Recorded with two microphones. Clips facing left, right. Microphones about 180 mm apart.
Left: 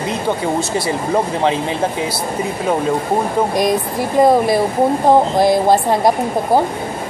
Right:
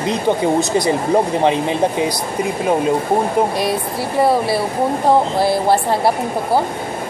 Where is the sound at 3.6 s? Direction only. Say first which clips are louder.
Left 3 dB; 15° left (ahead or behind).